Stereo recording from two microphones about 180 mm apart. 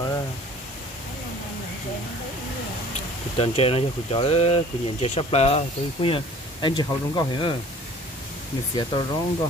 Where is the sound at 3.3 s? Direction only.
35° left (ahead or behind).